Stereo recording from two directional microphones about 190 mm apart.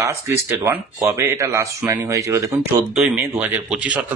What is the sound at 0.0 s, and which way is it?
Speech, 15° right (ahead or behind).